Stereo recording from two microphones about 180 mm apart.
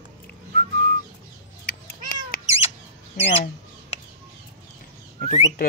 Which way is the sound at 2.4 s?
35° left (ahead or behind).